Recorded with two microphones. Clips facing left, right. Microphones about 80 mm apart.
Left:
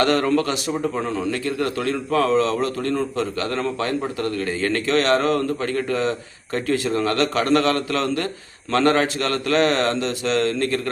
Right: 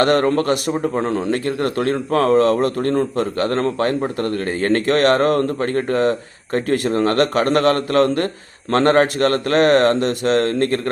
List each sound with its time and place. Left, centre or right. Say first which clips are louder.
0.0 s a man's voice: right 3 dB; right